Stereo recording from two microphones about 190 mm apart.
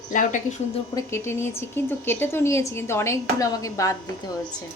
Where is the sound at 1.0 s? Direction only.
15° left (ahead or behind).